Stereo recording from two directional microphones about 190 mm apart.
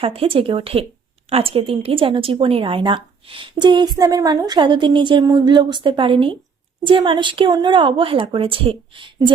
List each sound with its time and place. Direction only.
0.0 s a woman's voice: 30° right (ahead or behind)